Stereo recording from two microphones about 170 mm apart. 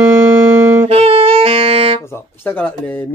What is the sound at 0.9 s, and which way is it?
Music, 35° right (ahead or behind).